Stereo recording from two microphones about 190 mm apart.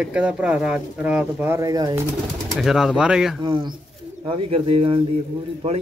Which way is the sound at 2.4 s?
Centre (ahead or behind).